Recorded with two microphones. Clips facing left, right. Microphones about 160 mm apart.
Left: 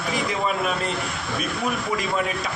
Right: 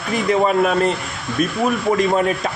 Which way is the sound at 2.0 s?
50° right (ahead or behind).